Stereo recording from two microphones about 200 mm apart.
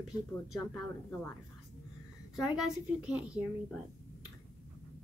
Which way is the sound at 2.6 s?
Centre (ahead or behind).